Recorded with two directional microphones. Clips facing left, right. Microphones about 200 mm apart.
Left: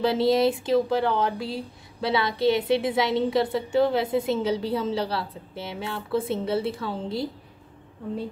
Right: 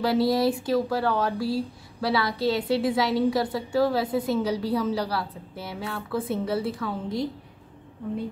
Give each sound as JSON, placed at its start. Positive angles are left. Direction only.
{"t": 0.0, "sound": "speech", "side_deg": 25}